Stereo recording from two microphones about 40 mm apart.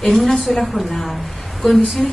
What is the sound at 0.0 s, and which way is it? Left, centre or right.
Speech, centre.